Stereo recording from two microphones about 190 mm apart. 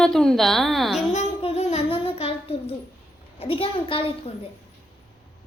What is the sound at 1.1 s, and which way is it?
Child singing, 35° left (ahead or behind).